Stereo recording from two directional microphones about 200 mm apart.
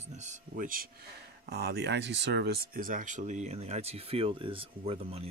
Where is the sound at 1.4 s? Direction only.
55° right (ahead or behind).